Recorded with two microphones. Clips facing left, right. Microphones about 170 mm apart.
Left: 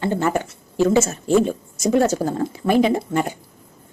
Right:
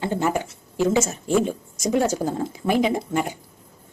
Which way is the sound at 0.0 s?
15° right (ahead or behind).